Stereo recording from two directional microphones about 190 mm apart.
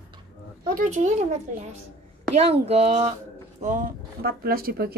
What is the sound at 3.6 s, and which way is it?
Speech, 50° right (ahead or behind).